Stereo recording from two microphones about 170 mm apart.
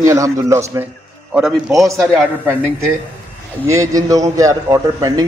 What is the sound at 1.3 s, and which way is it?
Speech, 5° right (ahead or behind).